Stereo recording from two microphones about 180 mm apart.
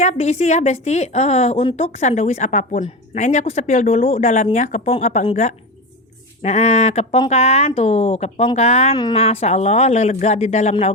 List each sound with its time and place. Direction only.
0.0 s a woman's voice: 40° left (ahead or behind)
9.0 s a woman's voice: 25° left (ahead or behind)
9.2 s a woman's voice: 35° left (ahead or behind)